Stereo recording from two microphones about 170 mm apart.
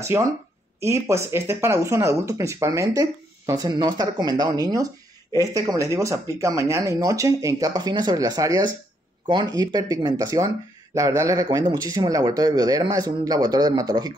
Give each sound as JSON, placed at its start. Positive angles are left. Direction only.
{"t": 0.0, "sound": "speech", "side_deg": -15}